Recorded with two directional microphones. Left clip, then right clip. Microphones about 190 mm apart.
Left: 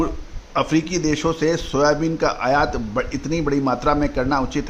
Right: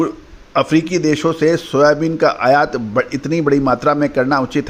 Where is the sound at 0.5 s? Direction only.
20° right (ahead or behind).